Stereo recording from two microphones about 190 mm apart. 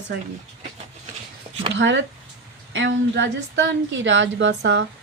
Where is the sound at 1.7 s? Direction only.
75° right (ahead or behind).